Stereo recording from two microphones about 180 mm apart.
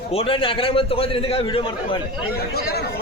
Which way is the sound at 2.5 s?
60° left (ahead or behind).